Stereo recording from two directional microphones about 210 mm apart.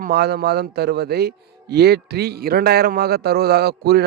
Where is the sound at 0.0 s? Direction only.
50° right (ahead or behind).